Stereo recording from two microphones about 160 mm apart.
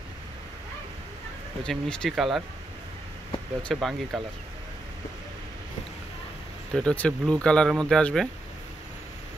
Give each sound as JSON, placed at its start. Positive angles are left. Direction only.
{"t": 1.6, "sound": "speech", "side_deg": 5}
{"t": 3.6, "sound": "speech", "side_deg": 0}
{"t": 6.7, "sound": "speech", "side_deg": 5}